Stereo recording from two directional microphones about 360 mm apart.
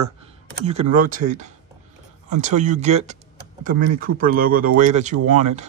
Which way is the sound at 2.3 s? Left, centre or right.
Centre.